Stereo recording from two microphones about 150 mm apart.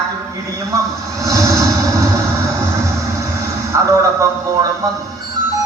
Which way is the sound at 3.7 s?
20° right (ahead or behind).